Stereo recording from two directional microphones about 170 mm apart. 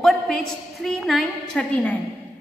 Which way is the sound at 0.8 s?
Centre (ahead or behind).